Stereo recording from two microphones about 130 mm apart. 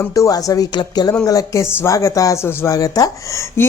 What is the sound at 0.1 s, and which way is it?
Speech, 30° left (ahead or behind).